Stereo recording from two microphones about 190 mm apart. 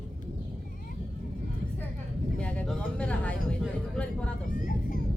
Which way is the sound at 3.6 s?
5° left (ahead or behind).